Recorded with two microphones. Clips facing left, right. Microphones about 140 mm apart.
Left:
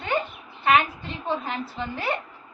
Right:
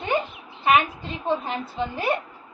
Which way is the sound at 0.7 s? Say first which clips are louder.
Right 1 dB; 15° right (ahead or behind).